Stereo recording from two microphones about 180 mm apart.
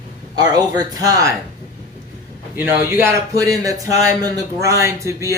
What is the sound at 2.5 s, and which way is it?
Speech, 10° right (ahead or behind).